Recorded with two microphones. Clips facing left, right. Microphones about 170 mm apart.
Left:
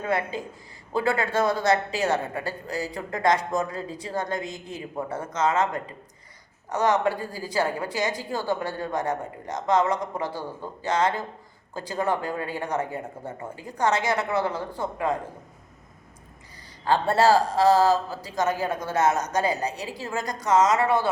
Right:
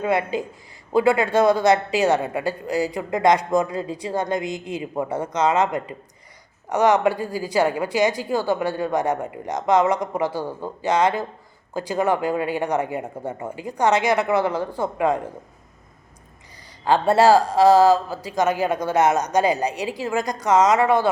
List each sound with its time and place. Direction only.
0.0 s speech: 15° right (ahead or behind)
16.8 s speech: 15° right (ahead or behind)